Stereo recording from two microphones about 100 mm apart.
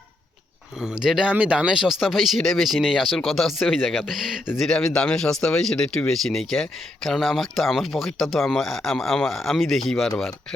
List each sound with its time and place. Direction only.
0.8 s speech: 5° right (ahead or behind)